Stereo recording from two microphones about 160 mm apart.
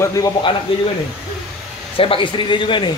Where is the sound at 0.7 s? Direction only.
35° left (ahead or behind).